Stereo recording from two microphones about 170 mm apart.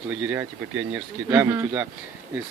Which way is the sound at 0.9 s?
10° right (ahead or behind).